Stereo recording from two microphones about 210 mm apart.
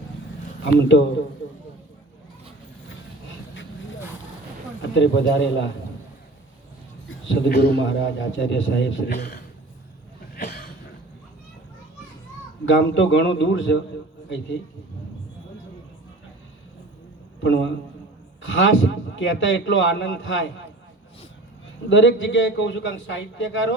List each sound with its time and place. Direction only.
0.8 s a man's voice: 60° left (ahead or behind)
4.8 s a man's voice: 60° left (ahead or behind)
7.3 s a man's voice: 50° left (ahead or behind)
10.3 s a sound: 50° left (ahead or behind)
12.6 s a man's voice: 60° left (ahead or behind)
17.4 s a man's voice: 60° left (ahead or behind)
21.8 s a man's voice: 60° left (ahead or behind)